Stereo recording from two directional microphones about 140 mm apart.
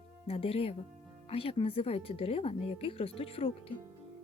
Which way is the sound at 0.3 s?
45° left (ahead or behind).